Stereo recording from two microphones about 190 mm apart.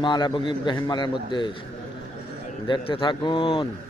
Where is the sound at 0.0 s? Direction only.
25° left (ahead or behind).